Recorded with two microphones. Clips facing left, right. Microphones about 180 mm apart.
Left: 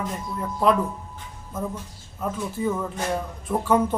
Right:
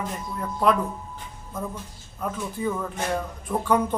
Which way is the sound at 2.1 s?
5° left (ahead or behind).